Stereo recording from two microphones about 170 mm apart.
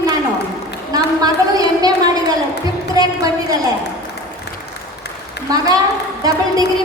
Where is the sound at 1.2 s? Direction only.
20° right (ahead or behind).